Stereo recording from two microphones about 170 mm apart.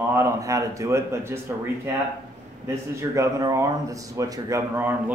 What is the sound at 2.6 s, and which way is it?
Speech, 15° right (ahead or behind).